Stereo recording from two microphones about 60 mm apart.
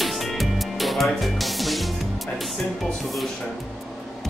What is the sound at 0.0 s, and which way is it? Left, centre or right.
Music, centre.